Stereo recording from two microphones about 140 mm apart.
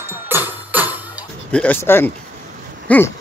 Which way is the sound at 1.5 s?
10° left (ahead or behind).